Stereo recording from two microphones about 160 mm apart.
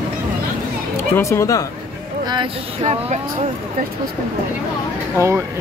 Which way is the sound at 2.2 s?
25° right (ahead or behind).